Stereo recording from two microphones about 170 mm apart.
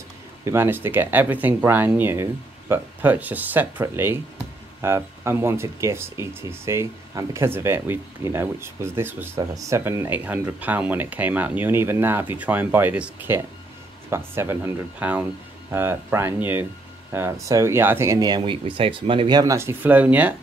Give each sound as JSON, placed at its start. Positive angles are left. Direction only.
{"t": 0.5, "sound": "speech", "side_deg": -15}